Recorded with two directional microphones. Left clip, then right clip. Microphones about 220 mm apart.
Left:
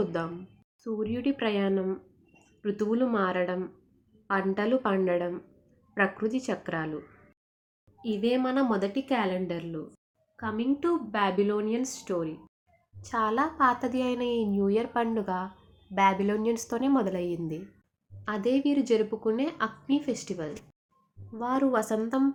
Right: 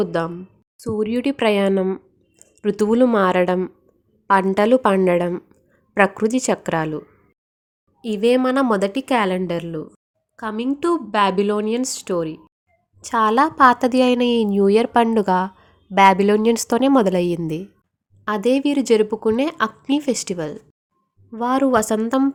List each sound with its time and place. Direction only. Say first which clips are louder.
0.0 s a woman's voice: right 9 dB; 45° right (ahead or behind)
8.0 s a woman's voice: right 11 dB; 50° right (ahead or behind)